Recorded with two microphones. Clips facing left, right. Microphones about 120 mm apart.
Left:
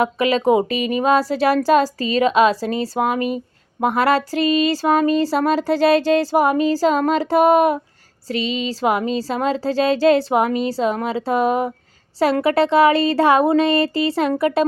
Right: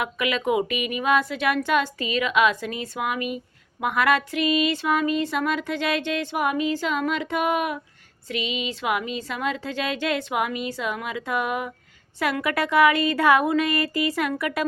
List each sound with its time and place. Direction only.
0.0 s speech: 35° left (ahead or behind)